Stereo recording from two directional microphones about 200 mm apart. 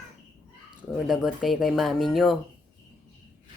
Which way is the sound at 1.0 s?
Centre (ahead or behind).